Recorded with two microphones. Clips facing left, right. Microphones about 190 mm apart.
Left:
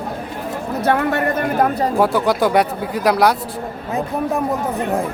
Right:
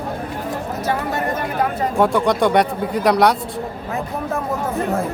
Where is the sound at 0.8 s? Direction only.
60° left (ahead or behind).